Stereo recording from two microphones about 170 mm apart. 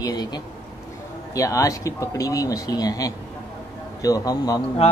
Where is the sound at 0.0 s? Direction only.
25° left (ahead or behind).